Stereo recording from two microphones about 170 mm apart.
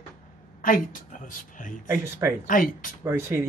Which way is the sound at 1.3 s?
50° left (ahead or behind).